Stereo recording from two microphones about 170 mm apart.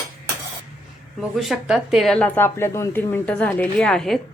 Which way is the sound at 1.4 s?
Centre (ahead or behind).